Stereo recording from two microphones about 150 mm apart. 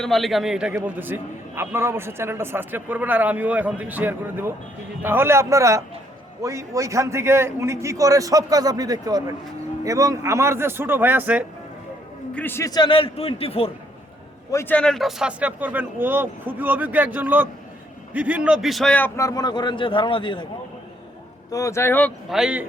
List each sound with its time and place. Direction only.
0.0 s a man's voice: centre (ahead or behind)
12.3 s a man's voice: 10° left (ahead or behind); by 13.7 s 40° left (ahead or behind)
14.5 s a man's voice: 15° left (ahead or behind); by 20.5 s 30° left (ahead or behind)
21.5 s speech: 20° left (ahead or behind)
22.3 s a man's voice: 5° right (ahead or behind)